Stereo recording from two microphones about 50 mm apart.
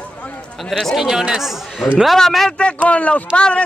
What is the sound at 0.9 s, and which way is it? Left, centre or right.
Speech, centre.